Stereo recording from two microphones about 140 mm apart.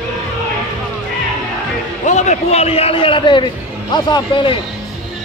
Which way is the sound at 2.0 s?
55° left (ahead or behind).